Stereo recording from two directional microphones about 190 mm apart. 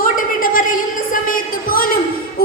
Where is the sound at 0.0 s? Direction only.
45° left (ahead or behind).